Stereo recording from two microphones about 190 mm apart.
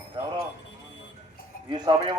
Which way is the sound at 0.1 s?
20° right (ahead or behind).